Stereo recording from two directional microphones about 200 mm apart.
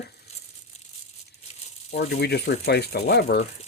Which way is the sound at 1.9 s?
55° left (ahead or behind).